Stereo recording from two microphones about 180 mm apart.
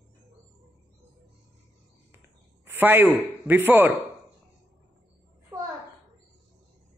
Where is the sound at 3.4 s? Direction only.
10° right (ahead or behind).